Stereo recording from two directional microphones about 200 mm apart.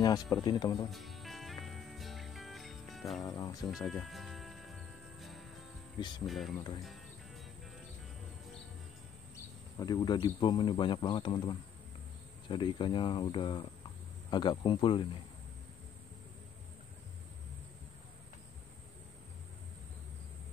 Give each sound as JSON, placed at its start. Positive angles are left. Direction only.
{"t": 0.0, "sound": "speech", "side_deg": 20}
{"t": 0.8, "sound": "music", "side_deg": 0}
{"t": 3.3, "sound": "speech", "side_deg": 20}
{"t": 3.7, "sound": "music", "side_deg": 0}
{"t": 5.9, "sound": "speech", "side_deg": 20}
{"t": 6.2, "sound": "speech", "side_deg": 0}
{"t": 9.8, "sound": "speech", "side_deg": 20}